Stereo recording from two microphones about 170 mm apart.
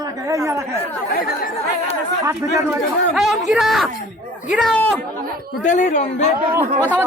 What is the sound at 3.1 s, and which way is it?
Speech, centre (ahead or behind).